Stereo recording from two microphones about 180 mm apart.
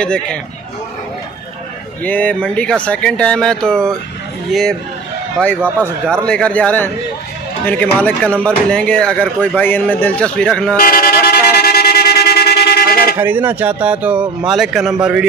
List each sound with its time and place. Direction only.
0.0 s a man's voice: 5° left (ahead or behind)
2.0 s a man's voice: 10° left (ahead or behind)
6.2 s speech: 5° left (ahead or behind)
10.8 s vehicle: 55° left (ahead or behind)
13.2 s speech: 10° right (ahead or behind)